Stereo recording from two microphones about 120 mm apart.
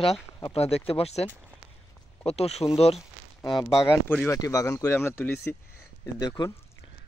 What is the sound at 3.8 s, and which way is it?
Speech, 20° left (ahead or behind).